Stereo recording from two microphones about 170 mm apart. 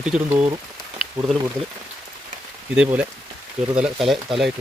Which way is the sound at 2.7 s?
5° right (ahead or behind).